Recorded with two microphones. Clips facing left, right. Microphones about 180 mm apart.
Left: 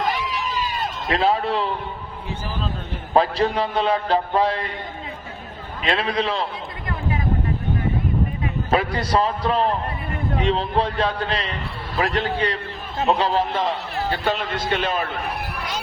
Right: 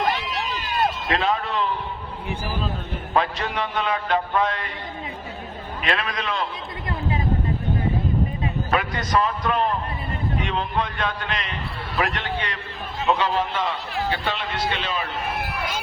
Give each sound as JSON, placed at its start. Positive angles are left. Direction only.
{"t": 0.3, "sound": "a sound", "side_deg": -65}
{"t": 1.1, "sound": "a man's voice", "side_deg": 35}
{"t": 3.1, "sound": "a man's voice", "side_deg": 35}
{"t": 5.8, "sound": "a man's voice", "side_deg": 30}
{"t": 8.7, "sound": "a man's voice", "side_deg": 30}